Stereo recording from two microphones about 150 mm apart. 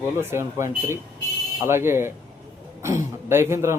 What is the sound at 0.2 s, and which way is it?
A man's voice, 15° right (ahead or behind).